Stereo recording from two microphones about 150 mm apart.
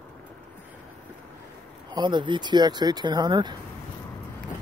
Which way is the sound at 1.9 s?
30° right (ahead or behind).